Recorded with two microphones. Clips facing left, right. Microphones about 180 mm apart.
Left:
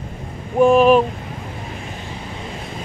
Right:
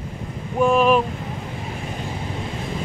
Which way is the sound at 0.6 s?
25° left (ahead or behind).